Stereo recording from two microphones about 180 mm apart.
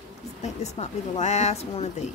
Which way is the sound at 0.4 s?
40° left (ahead or behind).